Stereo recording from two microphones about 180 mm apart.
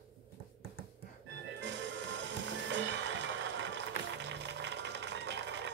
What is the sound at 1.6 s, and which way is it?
Music, 90° right.